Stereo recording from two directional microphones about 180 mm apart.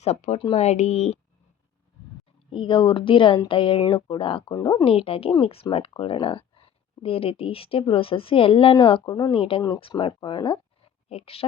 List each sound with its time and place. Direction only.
0.0 s speech: 35° left (ahead or behind)
2.5 s speech: 30° left (ahead or behind)